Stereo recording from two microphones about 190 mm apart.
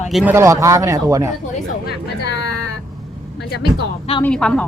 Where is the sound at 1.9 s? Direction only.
65° left (ahead or behind).